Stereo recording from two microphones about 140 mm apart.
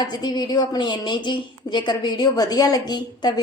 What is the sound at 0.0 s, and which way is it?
A woman's voice, 30° left (ahead or behind).